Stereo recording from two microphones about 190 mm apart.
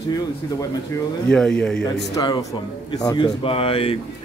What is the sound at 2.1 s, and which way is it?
A man's voice, 20° left (ahead or behind).